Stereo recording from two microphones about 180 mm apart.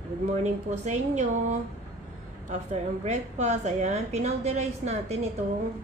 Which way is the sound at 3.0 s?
40° right (ahead or behind).